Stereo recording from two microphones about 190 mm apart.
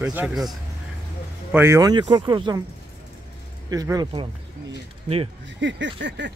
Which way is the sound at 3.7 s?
20° right (ahead or behind).